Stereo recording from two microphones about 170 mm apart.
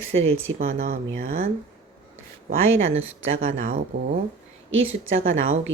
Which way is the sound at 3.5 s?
50° right (ahead or behind).